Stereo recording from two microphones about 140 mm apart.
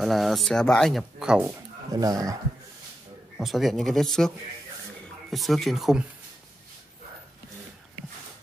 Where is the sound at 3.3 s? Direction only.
Centre (ahead or behind).